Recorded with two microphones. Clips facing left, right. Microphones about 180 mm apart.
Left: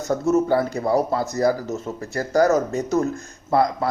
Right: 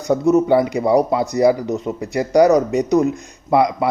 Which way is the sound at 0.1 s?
15° right (ahead or behind).